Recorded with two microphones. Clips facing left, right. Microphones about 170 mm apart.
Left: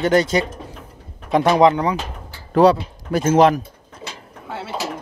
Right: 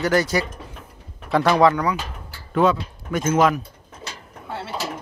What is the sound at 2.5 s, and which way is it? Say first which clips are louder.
Speech: left 5 dB; 35° left (ahead or behind).